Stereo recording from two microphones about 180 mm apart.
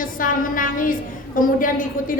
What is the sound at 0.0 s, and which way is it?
A woman's voice, 50° left (ahead or behind).